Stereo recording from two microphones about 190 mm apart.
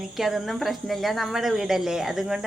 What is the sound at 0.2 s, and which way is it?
A woman's voice, centre (ahead or behind).